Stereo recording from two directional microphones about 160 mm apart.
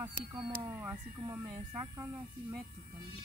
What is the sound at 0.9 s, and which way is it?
Speech, 25° right (ahead or behind).